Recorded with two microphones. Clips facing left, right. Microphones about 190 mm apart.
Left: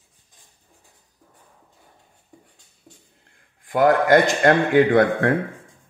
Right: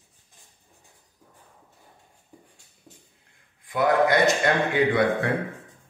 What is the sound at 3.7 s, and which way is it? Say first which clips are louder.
A man's voice: left 5 dB; 45° left (ahead or behind).